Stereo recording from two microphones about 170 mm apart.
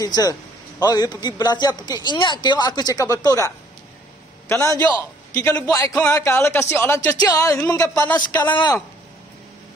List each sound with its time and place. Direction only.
0.0 s a man's voice: 20° left (ahead or behind)